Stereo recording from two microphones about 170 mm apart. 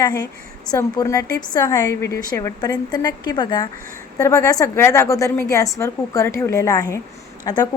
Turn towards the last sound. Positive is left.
turn(degrees=20)  # may be behind; listen again after turning